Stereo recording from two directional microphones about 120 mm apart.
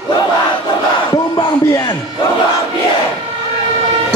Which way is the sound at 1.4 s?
40° left (ahead or behind).